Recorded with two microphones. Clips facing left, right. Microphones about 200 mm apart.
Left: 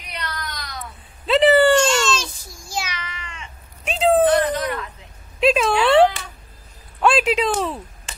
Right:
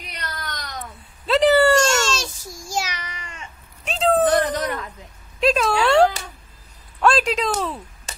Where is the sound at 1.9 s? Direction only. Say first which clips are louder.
Left 1 dB; 45° right (ahead or behind).